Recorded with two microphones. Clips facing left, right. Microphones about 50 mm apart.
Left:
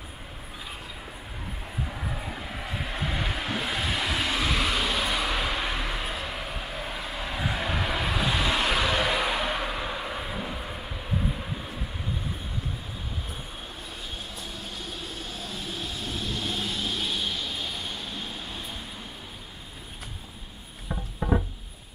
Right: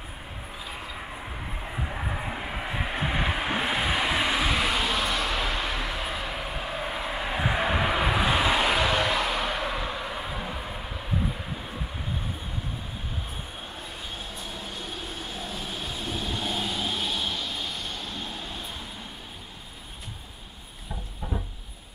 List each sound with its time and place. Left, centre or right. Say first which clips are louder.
1.7 s vehicle: right 2 dB; right; by 6.1 s centre
6.1 s a sound: right 2 dB; centre
6.8 s vehicle: right 4 dB; right; by 10.5 s centre
15.3 s vehicle: right 1 dB; centre
21.2 s music: left 9 dB; left